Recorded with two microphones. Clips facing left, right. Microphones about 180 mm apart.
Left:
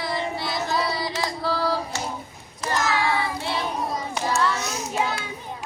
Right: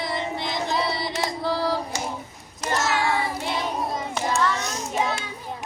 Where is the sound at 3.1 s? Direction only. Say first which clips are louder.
Even; 15° right (ahead or behind).